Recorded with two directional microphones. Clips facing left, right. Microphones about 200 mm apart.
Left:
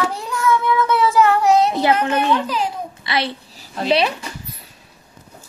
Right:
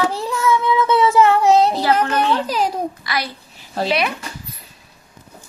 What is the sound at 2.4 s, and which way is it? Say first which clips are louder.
Speech: right 2 dB; 40° right (ahead or behind).